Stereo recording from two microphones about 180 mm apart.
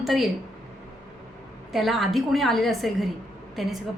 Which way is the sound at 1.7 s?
Centre (ahead or behind).